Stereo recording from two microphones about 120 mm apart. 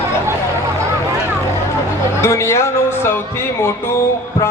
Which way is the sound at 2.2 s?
25° left (ahead or behind).